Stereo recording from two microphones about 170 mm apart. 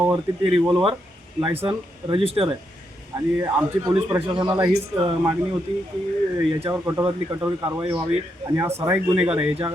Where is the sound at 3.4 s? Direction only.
20° right (ahead or behind).